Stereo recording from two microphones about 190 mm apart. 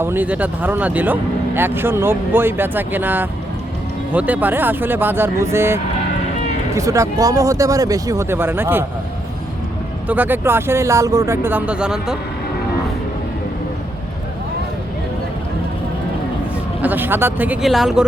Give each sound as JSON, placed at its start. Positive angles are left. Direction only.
{"t": 0.0, "sound": "speech", "side_deg": -10}
{"t": 10.1, "sound": "speech", "side_deg": -10}
{"t": 16.8, "sound": "speech", "side_deg": -10}